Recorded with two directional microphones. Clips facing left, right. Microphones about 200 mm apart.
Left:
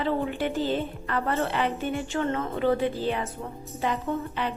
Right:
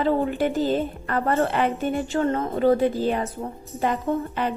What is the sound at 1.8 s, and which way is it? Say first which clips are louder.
Speech: right 5 dB; 40° right (ahead or behind).